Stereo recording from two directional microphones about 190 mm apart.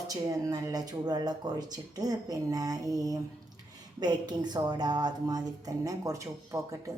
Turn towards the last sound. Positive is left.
turn(degrees=-15)  # may be behind; listen again after turning